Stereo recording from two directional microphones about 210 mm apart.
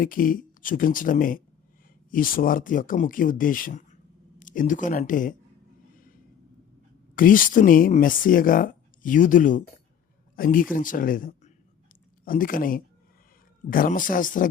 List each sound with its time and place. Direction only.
0.0 s speech: 40° left (ahead or behind)
7.2 s speech: 40° left (ahead or behind)